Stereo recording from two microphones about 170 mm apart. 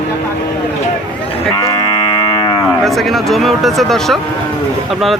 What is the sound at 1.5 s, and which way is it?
Moo, 25° left (ahead or behind).